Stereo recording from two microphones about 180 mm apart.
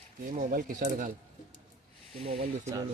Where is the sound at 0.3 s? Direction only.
50° right (ahead or behind).